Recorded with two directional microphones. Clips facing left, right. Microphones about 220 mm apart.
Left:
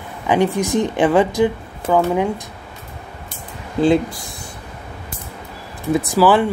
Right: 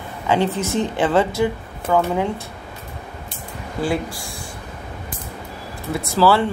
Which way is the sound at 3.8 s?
20° left (ahead or behind).